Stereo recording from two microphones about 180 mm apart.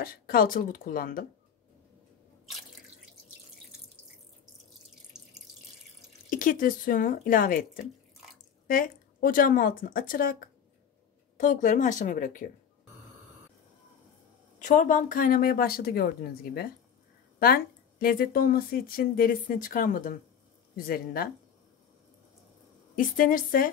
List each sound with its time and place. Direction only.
0.0 s speech: 55° left (ahead or behind)
6.3 s speech: 50° left (ahead or behind)
14.6 s speech: 45° left (ahead or behind)
22.9 s speech: 50° left (ahead or behind)